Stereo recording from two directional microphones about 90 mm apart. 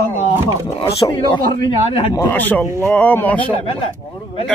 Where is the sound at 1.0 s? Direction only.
50° left (ahead or behind).